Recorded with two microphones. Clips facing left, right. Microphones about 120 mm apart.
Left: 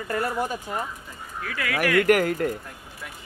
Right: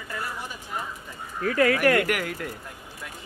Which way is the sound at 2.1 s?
45° left (ahead or behind).